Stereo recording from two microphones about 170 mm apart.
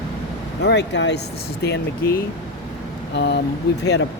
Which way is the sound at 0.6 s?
90° left.